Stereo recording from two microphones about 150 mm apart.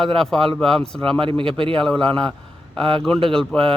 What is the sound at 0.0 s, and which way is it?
Speech, 5° left (ahead or behind).